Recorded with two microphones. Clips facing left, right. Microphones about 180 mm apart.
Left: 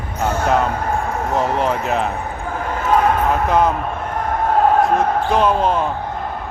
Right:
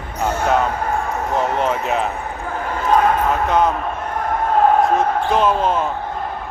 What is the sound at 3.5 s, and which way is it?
Speech, centre (ahead or behind).